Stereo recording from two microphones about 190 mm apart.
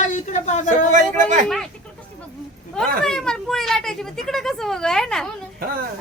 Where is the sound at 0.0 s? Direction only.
40° left (ahead or behind).